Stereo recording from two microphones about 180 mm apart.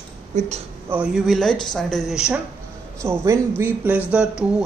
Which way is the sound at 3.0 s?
15° right (ahead or behind).